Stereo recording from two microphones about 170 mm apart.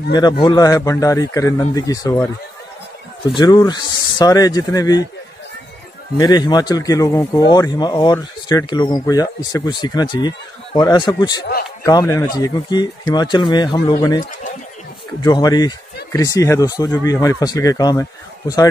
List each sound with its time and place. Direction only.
0.1 s speech: 25° left (ahead or behind)
3.3 s speech: 25° left (ahead or behind)
6.1 s speech: 20° left (ahead or behind)
15.2 s speech: 25° left (ahead or behind)